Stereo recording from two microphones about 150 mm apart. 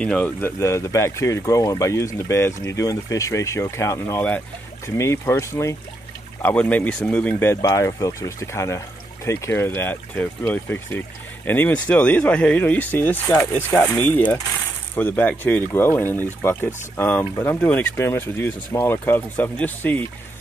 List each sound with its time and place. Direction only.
0.0 s speech: 10° left (ahead or behind)